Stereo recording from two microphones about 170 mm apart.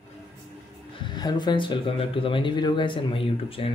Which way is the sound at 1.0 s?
25° left (ahead or behind).